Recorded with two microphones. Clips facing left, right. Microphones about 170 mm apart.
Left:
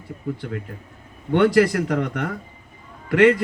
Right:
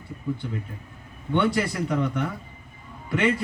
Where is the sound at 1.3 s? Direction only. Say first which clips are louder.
Left 7 dB; 80° left.